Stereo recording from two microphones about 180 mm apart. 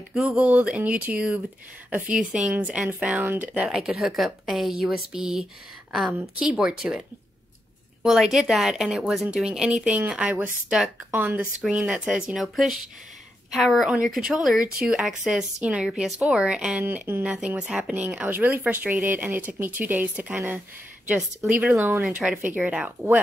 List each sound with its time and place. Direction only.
0.1 s a woman's voice: 5° right (ahead or behind)
21.7 s a woman's voice: 15° right (ahead or behind)
22.0 s speech: 5° right (ahead or behind)